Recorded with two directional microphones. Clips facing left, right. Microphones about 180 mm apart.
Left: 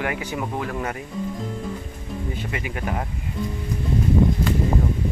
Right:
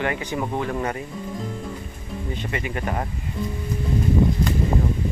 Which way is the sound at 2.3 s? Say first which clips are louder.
Right 2 dB; 5° left (ahead or behind).